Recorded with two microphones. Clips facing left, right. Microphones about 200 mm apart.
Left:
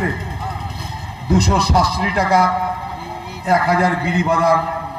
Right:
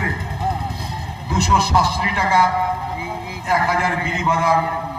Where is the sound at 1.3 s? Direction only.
40° left (ahead or behind).